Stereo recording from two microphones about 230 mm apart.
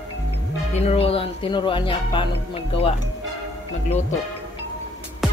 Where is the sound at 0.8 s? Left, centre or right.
Left.